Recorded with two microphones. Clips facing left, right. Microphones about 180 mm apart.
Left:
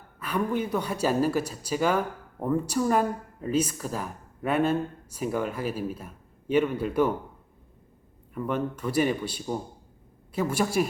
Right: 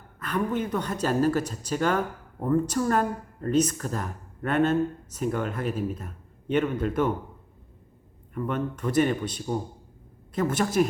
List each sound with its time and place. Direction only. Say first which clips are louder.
0.2 s speech: even; 10° left (ahead or behind)
8.3 s speech: even; 5° left (ahead or behind)